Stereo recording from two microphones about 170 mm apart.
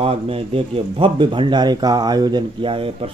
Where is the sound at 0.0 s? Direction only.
35° right (ahead or behind).